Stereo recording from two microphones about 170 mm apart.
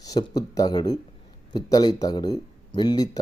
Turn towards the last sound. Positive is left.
turn(degrees=25)  # may be behind; listen again after turning